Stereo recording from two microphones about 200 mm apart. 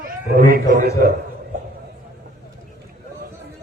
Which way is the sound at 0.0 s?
45° right (ahead or behind).